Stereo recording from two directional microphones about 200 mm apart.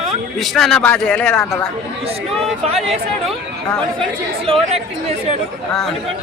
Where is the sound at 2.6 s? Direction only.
30° right (ahead or behind).